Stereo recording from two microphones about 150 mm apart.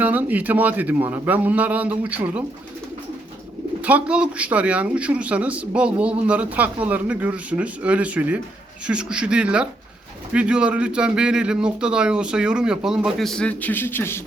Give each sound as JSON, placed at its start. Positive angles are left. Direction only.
{"t": 0.0, "sound": "speech", "side_deg": -10}
{"t": 3.8, "sound": "speech", "side_deg": -10}